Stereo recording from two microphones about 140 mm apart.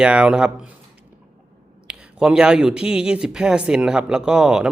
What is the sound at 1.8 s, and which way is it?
Speech, 5° right (ahead or behind).